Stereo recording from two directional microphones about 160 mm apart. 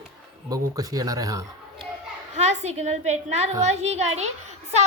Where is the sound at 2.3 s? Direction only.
45° right (ahead or behind).